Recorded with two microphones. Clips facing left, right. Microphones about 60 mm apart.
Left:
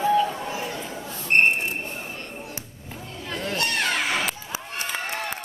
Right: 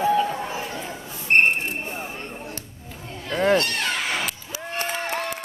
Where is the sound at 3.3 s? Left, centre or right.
Right.